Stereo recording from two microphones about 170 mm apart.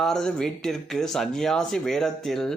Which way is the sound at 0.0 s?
5° left (ahead or behind).